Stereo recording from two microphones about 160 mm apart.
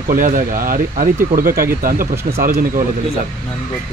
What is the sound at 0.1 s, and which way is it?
Speech, 60° right (ahead or behind).